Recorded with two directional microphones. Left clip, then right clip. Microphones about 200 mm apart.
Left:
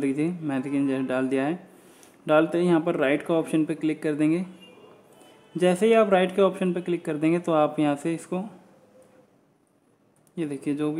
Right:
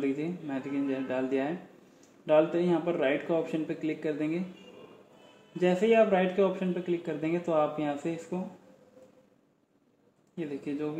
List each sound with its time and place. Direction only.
0.0 s speech: 35° left (ahead or behind)
5.6 s speech: 35° left (ahead or behind)
10.3 s speech: 30° left (ahead or behind)